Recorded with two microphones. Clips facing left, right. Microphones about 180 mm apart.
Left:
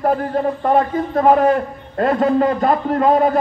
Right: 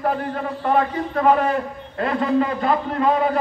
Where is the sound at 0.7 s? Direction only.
40° left (ahead or behind).